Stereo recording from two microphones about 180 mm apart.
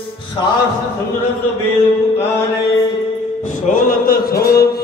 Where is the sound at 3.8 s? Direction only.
55° left (ahead or behind).